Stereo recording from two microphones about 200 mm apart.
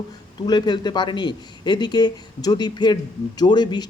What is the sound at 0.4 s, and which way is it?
Speech, 20° left (ahead or behind).